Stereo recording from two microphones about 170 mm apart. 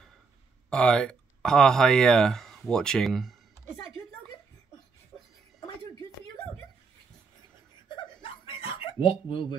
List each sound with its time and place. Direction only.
0.7 s speech: 5° left (ahead or behind)
7.9 s chuckle: 30° left (ahead or behind)
9.3 s speech: 30° left (ahead or behind)